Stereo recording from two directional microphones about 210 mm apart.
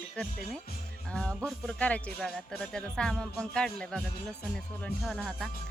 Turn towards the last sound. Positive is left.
turn(degrees=0)  # may be behind; listen again after turning